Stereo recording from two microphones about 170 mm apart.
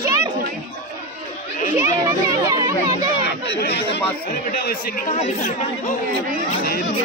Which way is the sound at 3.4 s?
80° left.